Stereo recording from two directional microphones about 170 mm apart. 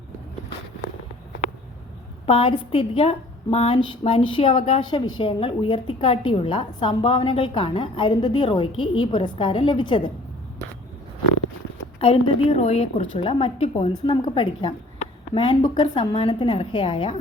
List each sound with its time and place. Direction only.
2.2 s a woman's voice: 35° left (ahead or behind)
11.9 s a woman's voice: 35° left (ahead or behind)